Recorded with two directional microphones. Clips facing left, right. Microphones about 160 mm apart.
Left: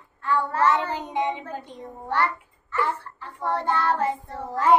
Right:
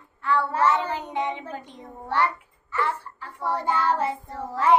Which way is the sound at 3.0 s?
10° right (ahead or behind).